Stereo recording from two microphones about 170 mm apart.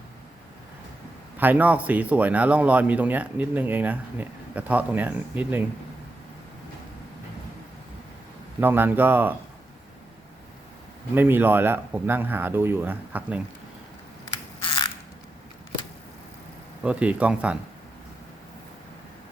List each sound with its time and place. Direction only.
1.4 s speech: 10° right (ahead or behind)
8.6 s speech: 10° right (ahead or behind)
11.1 s speech: 10° right (ahead or behind)
14.6 s crushing: 30° left (ahead or behind)
16.8 s speech: 10° right (ahead or behind)